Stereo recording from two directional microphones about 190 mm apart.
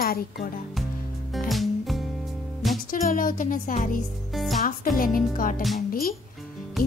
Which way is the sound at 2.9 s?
45° left (ahead or behind).